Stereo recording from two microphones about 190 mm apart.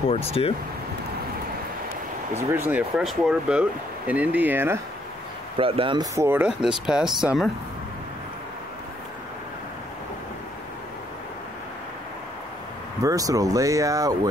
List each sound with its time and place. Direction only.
0.1 s speech: 30° left (ahead or behind)
2.3 s speech: 10° right (ahead or behind)
5.6 s speech: 30° right (ahead or behind)
6.1 s speech: 10° right (ahead or behind)
13.0 s speech: 20° right (ahead or behind)